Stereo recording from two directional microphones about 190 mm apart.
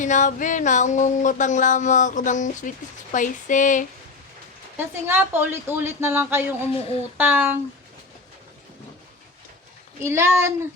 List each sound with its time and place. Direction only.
0.0 s a sound: 40° left (ahead or behind)
4.8 s a woman's voice: 10° right (ahead or behind)
10.0 s a woman's voice: 15° right (ahead or behind)